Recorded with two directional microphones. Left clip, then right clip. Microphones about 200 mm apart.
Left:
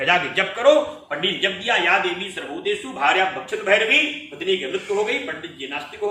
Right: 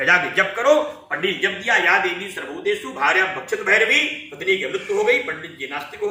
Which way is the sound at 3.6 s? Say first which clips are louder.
Right 1 dB; 25° left (ahead or behind).